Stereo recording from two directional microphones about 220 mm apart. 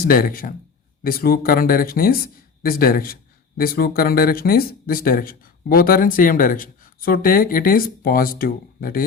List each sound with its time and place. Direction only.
0.0 s speech: 40° left (ahead or behind)